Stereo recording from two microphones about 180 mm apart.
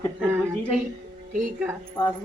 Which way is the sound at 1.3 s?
45° right (ahead or behind).